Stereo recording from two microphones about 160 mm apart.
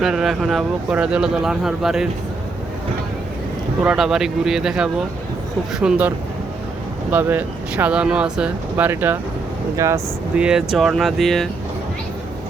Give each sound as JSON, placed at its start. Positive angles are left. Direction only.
{"t": 0.0, "sound": "speech", "side_deg": -5}
{"t": 3.8, "sound": "speech", "side_deg": -5}
{"t": 10.3, "sound": "speech", "side_deg": -5}